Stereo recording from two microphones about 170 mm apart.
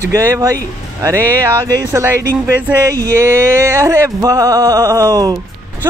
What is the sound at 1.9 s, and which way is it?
Speech, 15° right (ahead or behind).